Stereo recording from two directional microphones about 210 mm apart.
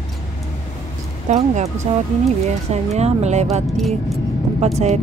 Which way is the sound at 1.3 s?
30° right (ahead or behind).